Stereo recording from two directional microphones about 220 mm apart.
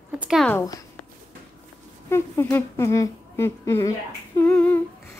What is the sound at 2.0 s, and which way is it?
A woman's voice, 10° left (ahead or behind).